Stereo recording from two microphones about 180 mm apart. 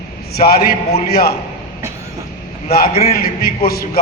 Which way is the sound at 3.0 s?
60° left (ahead or behind).